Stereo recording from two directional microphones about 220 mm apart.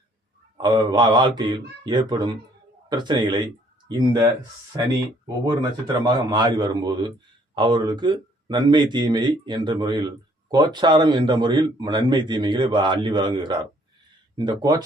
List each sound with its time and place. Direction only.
0.5 s a man's voice: 20° right (ahead or behind)
5.9 s a man's voice: 20° right (ahead or behind)